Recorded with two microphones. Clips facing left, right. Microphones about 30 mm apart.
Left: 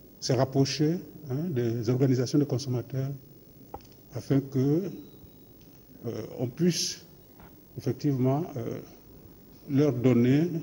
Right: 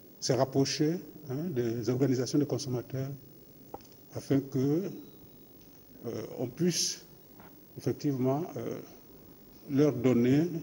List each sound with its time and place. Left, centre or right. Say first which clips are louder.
0.2 s a man's voice: left 2 dB; centre
6.0 s a man's voice: left 2 dB; centre